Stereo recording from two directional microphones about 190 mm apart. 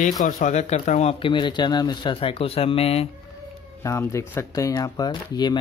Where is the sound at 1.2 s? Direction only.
25° left (ahead or behind).